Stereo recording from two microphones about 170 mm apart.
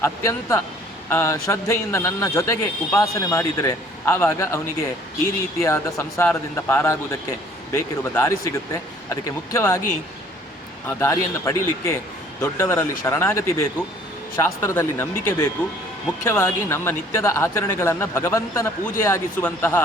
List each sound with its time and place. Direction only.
0.0 s speech: 15° left (ahead or behind)
10.8 s speech: 15° left (ahead or behind)